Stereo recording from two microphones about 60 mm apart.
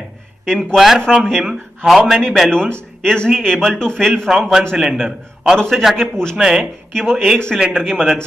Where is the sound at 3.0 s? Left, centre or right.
Centre.